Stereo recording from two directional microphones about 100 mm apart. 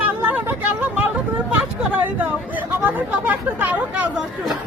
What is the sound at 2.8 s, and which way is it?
Speech, 15° right (ahead or behind).